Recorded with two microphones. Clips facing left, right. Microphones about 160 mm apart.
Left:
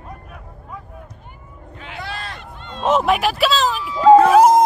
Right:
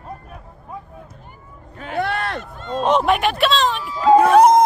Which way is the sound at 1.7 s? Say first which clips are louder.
Right 9 dB; 50° right (ahead or behind).